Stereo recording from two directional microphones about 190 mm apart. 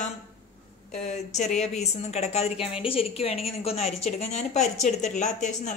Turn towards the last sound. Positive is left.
turn(degrees=40)  # may be behind; listen again after turning